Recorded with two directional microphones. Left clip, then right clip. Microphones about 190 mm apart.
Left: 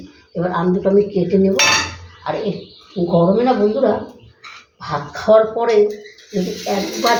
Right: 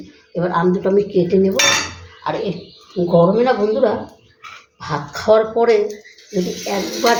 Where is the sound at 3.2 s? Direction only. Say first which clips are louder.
Right 1 dB; 50° right (ahead or behind).